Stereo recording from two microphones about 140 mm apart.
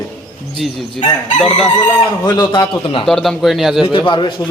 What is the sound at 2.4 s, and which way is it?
Speech, 30° left (ahead or behind).